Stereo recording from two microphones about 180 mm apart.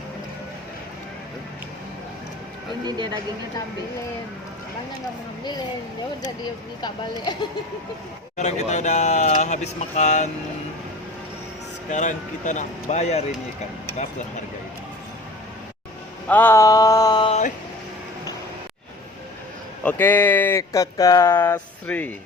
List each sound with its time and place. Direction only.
2.8 s speech: 25° right (ahead or behind)
6.4 s mantra: 25° left (ahead or behind)
8.4 s speech: 40° left (ahead or behind)
11.9 s speech: 45° left (ahead or behind)
16.3 s mantra: 10° left (ahead or behind)
19.8 s speech: 10° left (ahead or behind)